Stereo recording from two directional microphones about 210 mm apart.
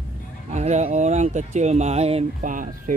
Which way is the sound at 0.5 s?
35° right (ahead or behind).